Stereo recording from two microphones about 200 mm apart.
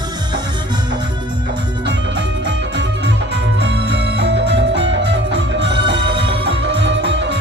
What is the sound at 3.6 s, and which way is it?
Music, 60° right (ahead or behind).